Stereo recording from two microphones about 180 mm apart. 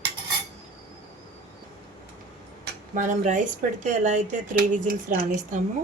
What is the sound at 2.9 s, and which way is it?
A woman's voice, 45° right (ahead or behind).